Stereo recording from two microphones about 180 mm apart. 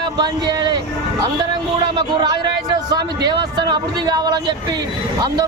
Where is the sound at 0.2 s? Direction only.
20° right (ahead or behind).